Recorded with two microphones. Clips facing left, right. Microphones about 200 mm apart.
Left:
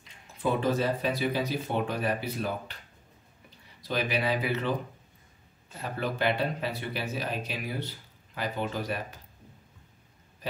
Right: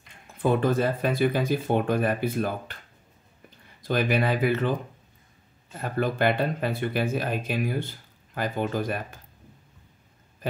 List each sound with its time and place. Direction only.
0.0 s speech: 50° right (ahead or behind)
5.8 s speech: 50° right (ahead or behind)